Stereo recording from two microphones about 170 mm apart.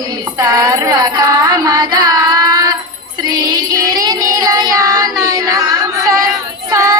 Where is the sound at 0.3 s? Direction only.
20° right (ahead or behind).